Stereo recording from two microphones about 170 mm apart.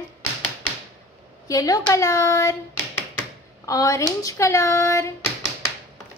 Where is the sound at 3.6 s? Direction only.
20° left (ahead or behind).